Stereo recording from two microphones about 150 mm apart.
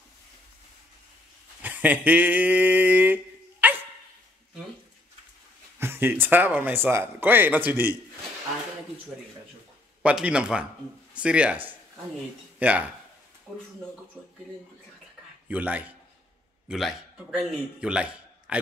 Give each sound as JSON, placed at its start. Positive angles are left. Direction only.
{"t": 1.6, "sound": "speech", "side_deg": -10}
{"t": 3.6, "sound": "dog", "side_deg": -10}
{"t": 5.8, "sound": "speech", "side_deg": -15}
{"t": 10.0, "sound": "speech", "side_deg": -5}
{"t": 15.4, "sound": "a man's voice", "side_deg": -10}